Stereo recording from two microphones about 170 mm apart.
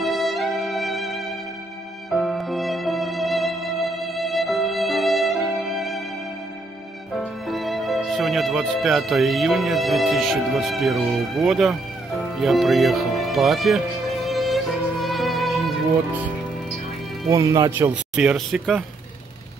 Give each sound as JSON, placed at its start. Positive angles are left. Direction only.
{"t": 0.0, "sound": "music", "side_deg": 0}
{"t": 7.2, "sound": "speech", "side_deg": 0}
{"t": 12.2, "sound": "music", "side_deg": 0}
{"t": 17.3, "sound": "speech", "side_deg": -20}
{"t": 18.1, "sound": "speech", "side_deg": -5}